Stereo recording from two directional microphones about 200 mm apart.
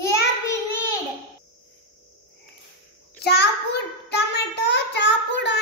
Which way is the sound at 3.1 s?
55° left (ahead or behind).